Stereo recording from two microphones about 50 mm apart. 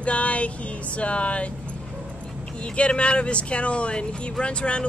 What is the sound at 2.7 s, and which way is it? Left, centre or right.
Speech, left.